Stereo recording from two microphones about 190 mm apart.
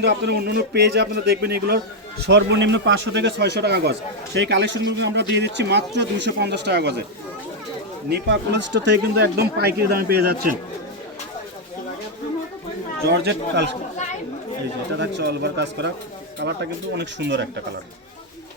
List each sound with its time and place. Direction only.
0.0 s speech: 60° right (ahead or behind)
2.2 s speech: 65° right (ahead or behind)
8.1 s speech: 65° right (ahead or behind)
13.1 s speech: 60° right (ahead or behind)
14.9 s speech: 65° right (ahead or behind)